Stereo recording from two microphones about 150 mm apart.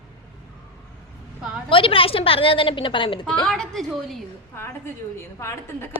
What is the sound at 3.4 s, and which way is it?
Speech, 5° left (ahead or behind).